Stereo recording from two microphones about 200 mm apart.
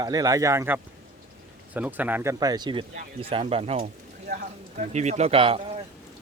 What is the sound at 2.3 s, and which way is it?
Speech, 20° right (ahead or behind).